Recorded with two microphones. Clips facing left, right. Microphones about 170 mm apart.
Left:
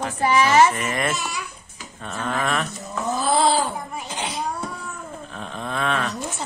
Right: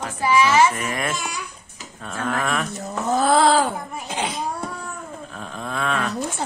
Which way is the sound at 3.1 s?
55° right (ahead or behind).